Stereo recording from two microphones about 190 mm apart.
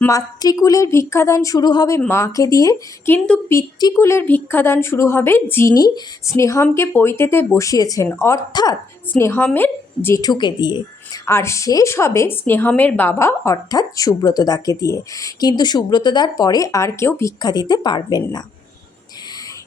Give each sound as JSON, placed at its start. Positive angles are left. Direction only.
{"t": 0.0, "sound": "a woman's voice", "side_deg": 20}
{"t": 3.2, "sound": "a woman's voice", "side_deg": 5}
{"t": 3.6, "sound": "a woman's voice", "side_deg": 20}